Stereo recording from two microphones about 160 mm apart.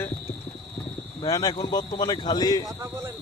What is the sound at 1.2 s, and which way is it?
Speech, 25° left (ahead or behind).